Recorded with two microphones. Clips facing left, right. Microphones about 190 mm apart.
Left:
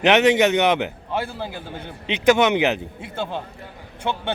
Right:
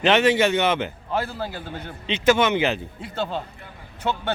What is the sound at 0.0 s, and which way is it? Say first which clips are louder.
Speech: left 2 dB; 15° left (ahead or behind).